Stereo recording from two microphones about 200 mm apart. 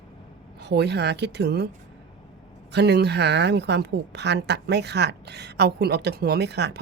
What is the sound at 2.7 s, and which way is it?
A woman's voice, 55° right (ahead or behind).